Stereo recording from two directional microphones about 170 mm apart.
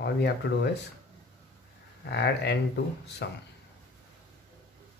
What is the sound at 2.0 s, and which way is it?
Speech, 80° left.